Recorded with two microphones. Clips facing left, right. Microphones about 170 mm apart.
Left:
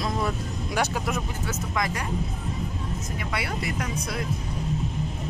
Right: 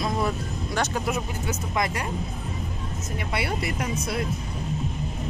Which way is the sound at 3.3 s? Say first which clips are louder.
Right 3 dB; 30° right (ahead or behind).